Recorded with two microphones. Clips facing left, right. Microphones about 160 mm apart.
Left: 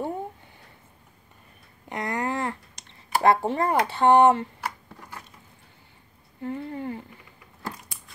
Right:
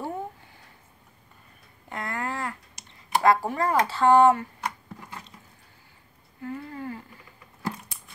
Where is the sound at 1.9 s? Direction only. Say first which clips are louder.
Left 4 dB; 20° left (ahead or behind).